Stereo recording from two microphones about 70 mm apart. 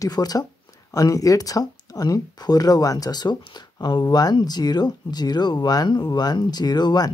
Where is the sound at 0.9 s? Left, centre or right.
Left.